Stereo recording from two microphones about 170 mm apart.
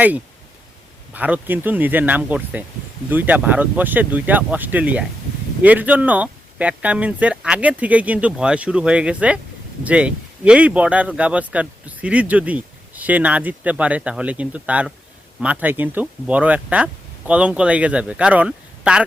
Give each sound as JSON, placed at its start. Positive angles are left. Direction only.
{"t": 1.1, "sound": "speech", "side_deg": -10}